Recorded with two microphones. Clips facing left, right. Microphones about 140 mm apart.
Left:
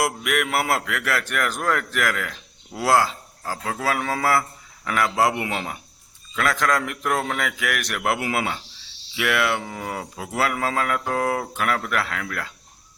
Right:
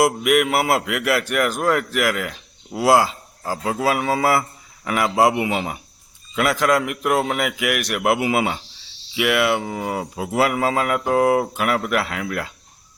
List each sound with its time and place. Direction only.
0.0 s a man's voice: 20° right (ahead or behind)